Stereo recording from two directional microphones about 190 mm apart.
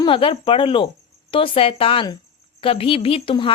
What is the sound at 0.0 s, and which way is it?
Speech, 25° left (ahead or behind).